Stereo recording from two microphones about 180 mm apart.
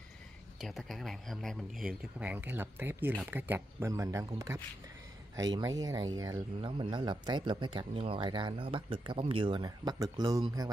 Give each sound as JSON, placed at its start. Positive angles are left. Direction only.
{"t": 0.6, "sound": "speech", "side_deg": 0}